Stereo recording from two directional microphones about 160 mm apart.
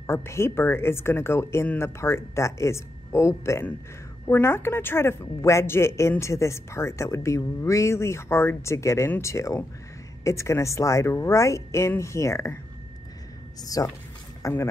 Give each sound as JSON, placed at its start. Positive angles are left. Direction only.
{"t": 0.0, "sound": "a woman's voice", "side_deg": 15}
{"t": 13.6, "sound": "speech", "side_deg": 20}